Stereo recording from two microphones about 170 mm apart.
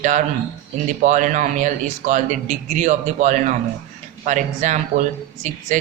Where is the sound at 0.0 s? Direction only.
45° right (ahead or behind).